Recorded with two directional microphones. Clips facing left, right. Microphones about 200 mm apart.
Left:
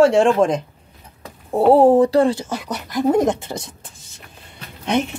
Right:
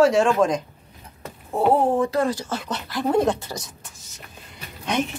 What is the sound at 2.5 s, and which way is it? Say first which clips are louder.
A child's voice: left 3 dB; 15° left (ahead or behind).